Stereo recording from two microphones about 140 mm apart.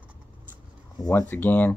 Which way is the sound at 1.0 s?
15° left (ahead or behind).